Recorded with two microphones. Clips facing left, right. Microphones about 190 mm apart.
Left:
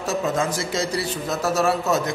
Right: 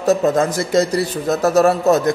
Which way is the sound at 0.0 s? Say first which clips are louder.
Right 8 dB; 40° right (ahead or behind).